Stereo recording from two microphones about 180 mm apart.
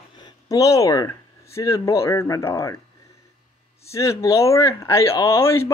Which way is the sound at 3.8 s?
15° left (ahead or behind).